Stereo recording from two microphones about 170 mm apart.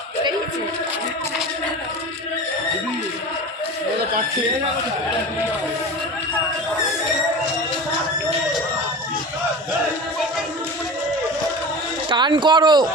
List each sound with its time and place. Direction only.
12.0 s speech: 25° right (ahead or behind)